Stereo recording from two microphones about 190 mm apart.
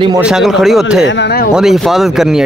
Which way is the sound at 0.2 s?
5° right (ahead or behind).